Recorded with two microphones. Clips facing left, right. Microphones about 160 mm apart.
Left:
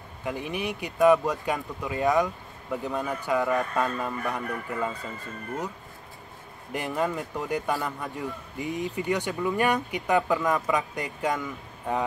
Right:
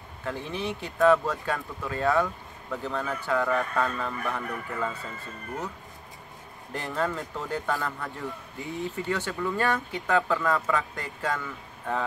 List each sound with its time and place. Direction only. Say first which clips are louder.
0.2 s a man's voice: left 1 dB; 15° left (ahead or behind)
6.7 s a man's voice: left 2 dB; 15° left (ahead or behind)